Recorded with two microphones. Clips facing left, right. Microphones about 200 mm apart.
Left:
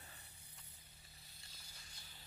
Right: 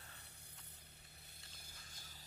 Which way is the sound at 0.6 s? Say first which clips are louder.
Right 2 dB; centre (ahead or behind).